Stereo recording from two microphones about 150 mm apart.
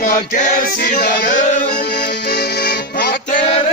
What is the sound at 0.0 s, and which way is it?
Music, 60° left (ahead or behind).